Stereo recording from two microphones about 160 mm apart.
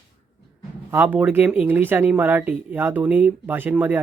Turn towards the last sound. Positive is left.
turn(degrees=-10)  # may be behind; listen again after turning